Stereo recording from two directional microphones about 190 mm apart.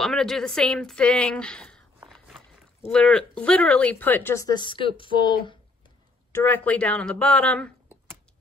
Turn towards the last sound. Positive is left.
turn(degrees=5)  # may be behind; listen again after turning